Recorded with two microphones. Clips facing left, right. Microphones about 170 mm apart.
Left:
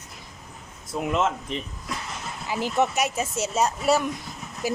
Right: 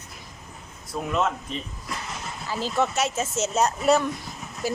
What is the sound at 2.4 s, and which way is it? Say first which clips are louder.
Speech: left 1 dB; 15° left (ahead or behind).